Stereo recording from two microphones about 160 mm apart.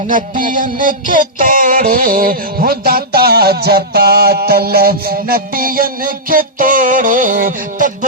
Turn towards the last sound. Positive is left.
turn(degrees=-55)  # may be behind; listen again after turning